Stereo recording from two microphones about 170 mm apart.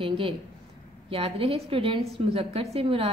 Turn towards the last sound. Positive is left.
turn(degrees=-35)  # may be behind; listen again after turning